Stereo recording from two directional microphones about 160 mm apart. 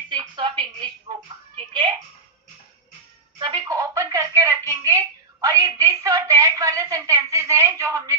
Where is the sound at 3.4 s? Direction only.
25° right (ahead or behind).